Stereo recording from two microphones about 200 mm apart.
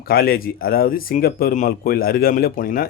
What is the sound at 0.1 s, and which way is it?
A man's voice, 50° left (ahead or behind).